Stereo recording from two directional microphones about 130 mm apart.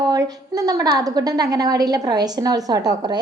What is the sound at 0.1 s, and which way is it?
A woman's voice, 30° right (ahead or behind).